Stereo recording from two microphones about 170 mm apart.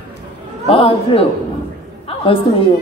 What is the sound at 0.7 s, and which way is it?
Speech, 30° left (ahead or behind).